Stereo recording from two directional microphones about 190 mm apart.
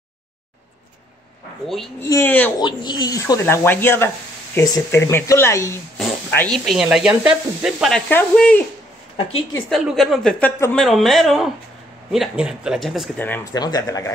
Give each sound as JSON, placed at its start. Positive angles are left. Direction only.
{"t": 1.7, "sound": "speech", "side_deg": 0}
{"t": 2.0, "sound": "speech", "side_deg": 10}
{"t": 2.6, "sound": "speech", "side_deg": 25}
{"t": 9.7, "sound": "speech", "side_deg": 0}
{"t": 13.2, "sound": "speech", "side_deg": 15}